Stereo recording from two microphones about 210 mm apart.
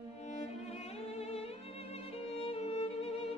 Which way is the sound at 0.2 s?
30° left (ahead or behind).